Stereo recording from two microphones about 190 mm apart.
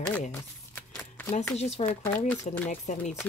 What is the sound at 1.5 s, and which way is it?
Speech, 35° left (ahead or behind).